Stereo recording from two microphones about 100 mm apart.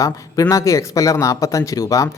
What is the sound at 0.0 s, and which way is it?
Speech, 35° left (ahead or behind).